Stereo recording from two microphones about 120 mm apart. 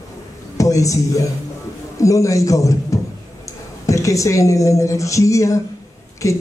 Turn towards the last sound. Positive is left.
turn(degrees=25)  # may be behind; listen again after turning